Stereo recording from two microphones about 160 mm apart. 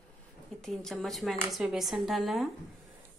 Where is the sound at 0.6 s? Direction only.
Centre (ahead or behind).